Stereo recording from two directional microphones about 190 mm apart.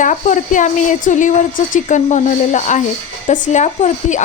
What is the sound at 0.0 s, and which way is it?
A woman's voice, 40° left (ahead or behind).